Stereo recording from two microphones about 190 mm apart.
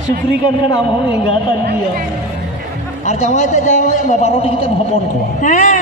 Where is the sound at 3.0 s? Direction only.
35° left (ahead or behind).